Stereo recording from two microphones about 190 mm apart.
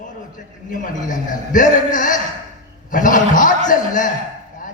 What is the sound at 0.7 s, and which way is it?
A man's voice, 40° left (ahead or behind).